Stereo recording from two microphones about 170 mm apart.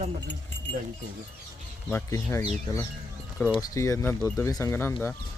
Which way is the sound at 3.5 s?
20° left (ahead or behind).